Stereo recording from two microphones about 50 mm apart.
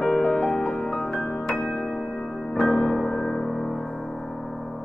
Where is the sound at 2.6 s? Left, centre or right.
Centre.